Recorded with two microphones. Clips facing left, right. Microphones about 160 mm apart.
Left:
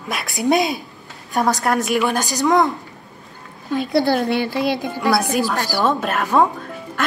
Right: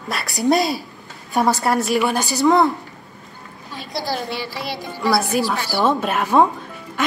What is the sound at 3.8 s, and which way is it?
Speech, 65° left (ahead or behind).